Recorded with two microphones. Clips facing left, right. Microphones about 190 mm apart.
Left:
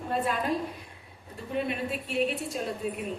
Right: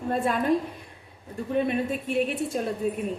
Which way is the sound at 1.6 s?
50° right (ahead or behind).